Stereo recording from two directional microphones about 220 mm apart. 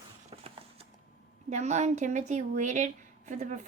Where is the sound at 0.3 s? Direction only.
25° right (ahead or behind).